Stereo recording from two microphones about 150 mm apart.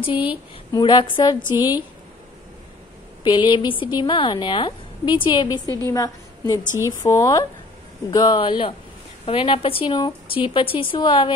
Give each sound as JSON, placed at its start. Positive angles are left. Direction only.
{"t": 0.0, "sound": "a woman's voice", "side_deg": 35}
{"t": 3.3, "sound": "a woman's voice", "side_deg": 30}